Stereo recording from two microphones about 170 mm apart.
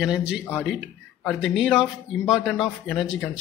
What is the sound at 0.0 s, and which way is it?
Speech, 5° right (ahead or behind).